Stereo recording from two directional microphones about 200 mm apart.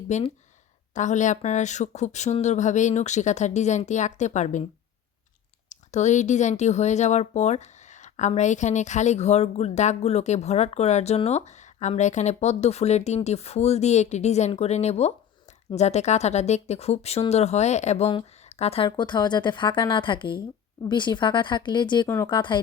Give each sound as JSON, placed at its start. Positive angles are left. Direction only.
{"t": 0.1, "sound": "speech", "side_deg": 35}
{"t": 5.6, "sound": "a woman's voice", "side_deg": 35}